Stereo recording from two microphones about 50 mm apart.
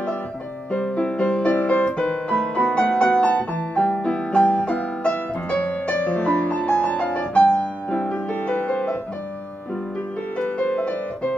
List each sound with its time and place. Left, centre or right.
0.7 s music: left
5.1 s music: left
10.4 s music: left